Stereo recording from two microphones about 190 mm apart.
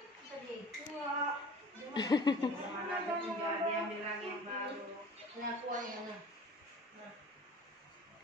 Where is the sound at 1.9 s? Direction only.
20° left (ahead or behind).